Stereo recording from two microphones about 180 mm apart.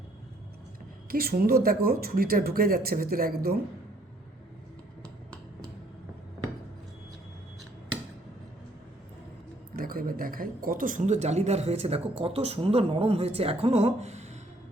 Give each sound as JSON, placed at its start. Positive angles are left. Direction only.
{"t": 1.1, "sound": "speech", "side_deg": -55}
{"t": 9.7, "sound": "speech", "side_deg": -55}